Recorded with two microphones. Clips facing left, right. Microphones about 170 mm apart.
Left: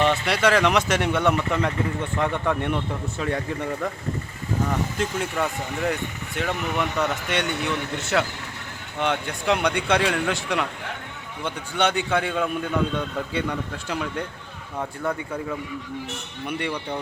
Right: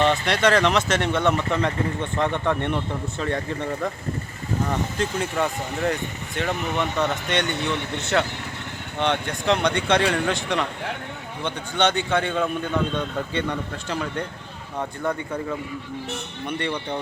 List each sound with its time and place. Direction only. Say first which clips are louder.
0.0 s speech: right 1 dB; 5° left (ahead or behind)
4.9 s speech: right 1 dB; 5° left (ahead or behind)
16.5 s speech: right 1 dB; 5° left (ahead or behind)